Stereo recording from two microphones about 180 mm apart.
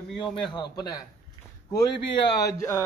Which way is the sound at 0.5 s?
25° left (ahead or behind).